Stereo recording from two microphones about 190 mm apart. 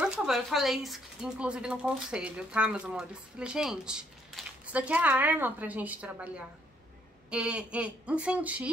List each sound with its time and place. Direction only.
0.0 s speech: 5° right (ahead or behind)